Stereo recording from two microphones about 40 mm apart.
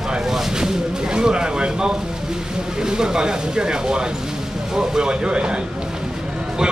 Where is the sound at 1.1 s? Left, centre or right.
Right.